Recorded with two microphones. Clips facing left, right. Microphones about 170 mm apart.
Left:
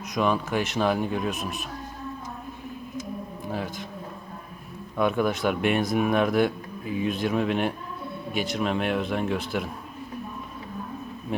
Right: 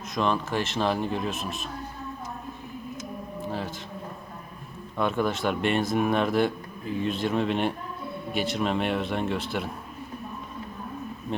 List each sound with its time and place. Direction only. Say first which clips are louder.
0.1 s a man's voice: left 2 dB; 5° left (ahead or behind)
4.9 s a man's voice: left 2 dB; 5° left (ahead or behind)